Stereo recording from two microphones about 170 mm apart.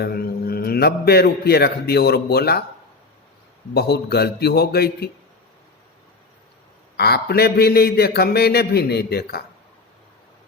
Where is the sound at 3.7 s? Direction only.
70° left (ahead or behind).